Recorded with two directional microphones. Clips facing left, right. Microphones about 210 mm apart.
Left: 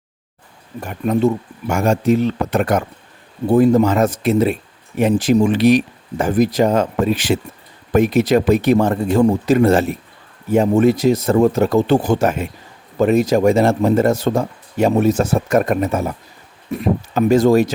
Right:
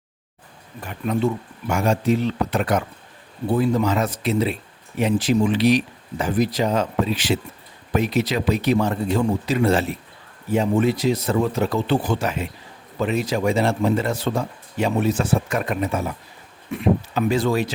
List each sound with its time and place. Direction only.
0.8 s speech: 45° left (ahead or behind)